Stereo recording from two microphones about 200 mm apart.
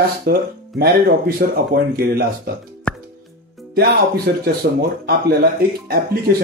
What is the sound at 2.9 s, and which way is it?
Plop, 5° left (ahead or behind).